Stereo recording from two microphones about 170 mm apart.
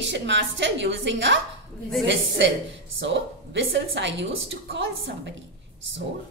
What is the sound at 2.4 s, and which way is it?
A woman's voice, 90° right.